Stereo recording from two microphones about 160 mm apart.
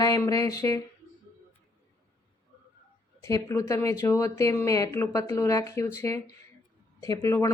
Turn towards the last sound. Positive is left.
turn(degrees=20)  # may be behind; listen again after turning